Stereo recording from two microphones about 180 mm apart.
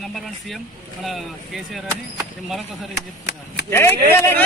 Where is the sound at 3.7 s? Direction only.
15° left (ahead or behind).